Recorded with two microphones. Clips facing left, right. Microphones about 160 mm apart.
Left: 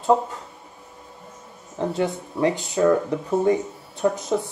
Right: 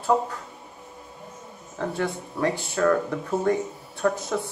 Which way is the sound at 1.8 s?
20° left (ahead or behind).